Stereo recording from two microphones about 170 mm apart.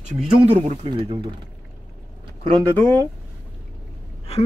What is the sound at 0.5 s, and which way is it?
Speech, 35° right (ahead or behind).